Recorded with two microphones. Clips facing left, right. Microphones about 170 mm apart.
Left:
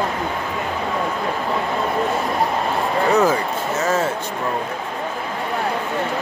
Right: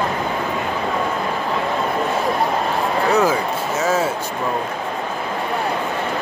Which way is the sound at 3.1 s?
Centre (ahead or behind).